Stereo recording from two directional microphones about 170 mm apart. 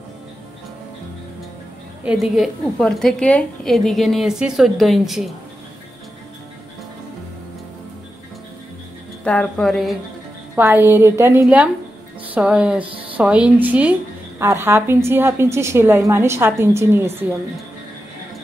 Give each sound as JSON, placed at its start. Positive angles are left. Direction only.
{"t": 2.0, "sound": "a woman's voice", "side_deg": 0}
{"t": 9.2, "sound": "a woman's voice", "side_deg": 5}
{"t": 10.5, "sound": "a woman's voice", "side_deg": -10}
{"t": 12.8, "sound": "speech", "side_deg": -30}
{"t": 13.1, "sound": "a woman's voice", "side_deg": -10}